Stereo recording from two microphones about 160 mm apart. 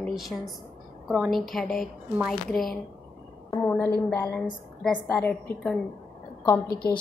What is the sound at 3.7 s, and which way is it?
A woman's voice, 10° left (ahead or behind).